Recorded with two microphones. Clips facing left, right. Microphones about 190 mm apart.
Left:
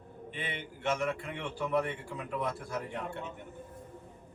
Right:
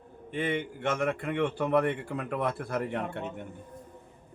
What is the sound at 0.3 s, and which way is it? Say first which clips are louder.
A man's voice: right 10 dB; 50° right (ahead or behind).